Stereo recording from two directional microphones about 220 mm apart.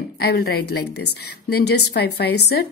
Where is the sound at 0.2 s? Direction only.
45° left (ahead or behind).